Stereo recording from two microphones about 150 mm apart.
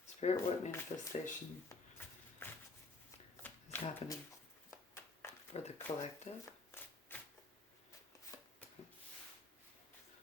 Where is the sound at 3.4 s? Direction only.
10° left (ahead or behind).